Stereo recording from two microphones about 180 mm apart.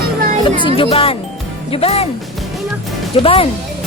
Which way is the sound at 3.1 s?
30° left (ahead or behind).